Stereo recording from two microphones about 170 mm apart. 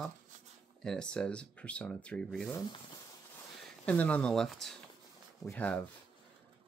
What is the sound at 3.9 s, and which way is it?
Speech, 10° left (ahead or behind).